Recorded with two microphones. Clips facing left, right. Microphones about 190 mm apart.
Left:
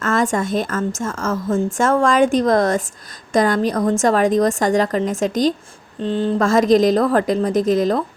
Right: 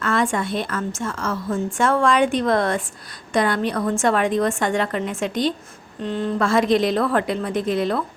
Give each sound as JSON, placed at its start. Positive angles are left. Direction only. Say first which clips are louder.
{"t": 0.0, "sound": "a woman's voice", "louder": "left 3 dB", "side_deg": 45}
{"t": 6.0, "sound": "a woman's voice", "louder": "left 4 dB", "side_deg": 30}